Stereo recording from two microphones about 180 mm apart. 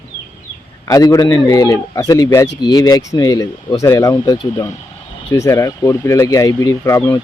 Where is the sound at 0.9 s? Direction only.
20° left (ahead or behind).